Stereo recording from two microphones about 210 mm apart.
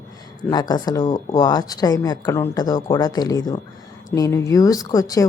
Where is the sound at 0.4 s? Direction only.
20° left (ahead or behind).